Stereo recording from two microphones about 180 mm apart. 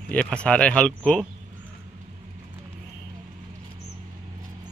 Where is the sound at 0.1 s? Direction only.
5° left (ahead or behind).